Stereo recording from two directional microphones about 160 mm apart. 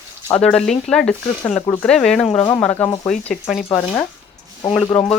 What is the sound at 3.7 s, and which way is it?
Speech, 20° left (ahead or behind).